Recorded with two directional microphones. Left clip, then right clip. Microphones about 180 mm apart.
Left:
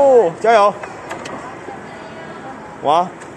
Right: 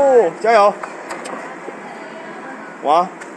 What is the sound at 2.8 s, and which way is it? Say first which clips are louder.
Speech: even; 10° left (ahead or behind).